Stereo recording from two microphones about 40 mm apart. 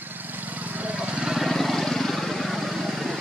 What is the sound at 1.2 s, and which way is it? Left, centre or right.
Vehicle, centre.